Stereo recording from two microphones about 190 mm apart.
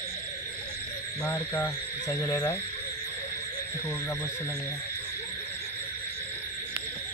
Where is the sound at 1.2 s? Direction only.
10° left (ahead or behind).